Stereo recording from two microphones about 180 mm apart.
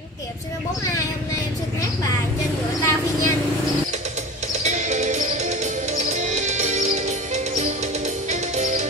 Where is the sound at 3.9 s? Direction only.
40° right (ahead or behind).